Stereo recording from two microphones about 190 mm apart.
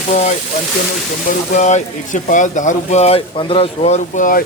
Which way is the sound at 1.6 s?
40° left (ahead or behind).